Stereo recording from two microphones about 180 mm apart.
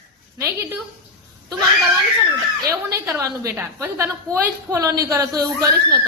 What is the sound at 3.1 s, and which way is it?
Speech, 15° right (ahead or behind).